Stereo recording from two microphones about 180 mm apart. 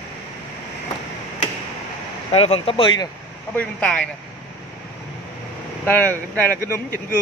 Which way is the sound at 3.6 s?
5° left (ahead or behind).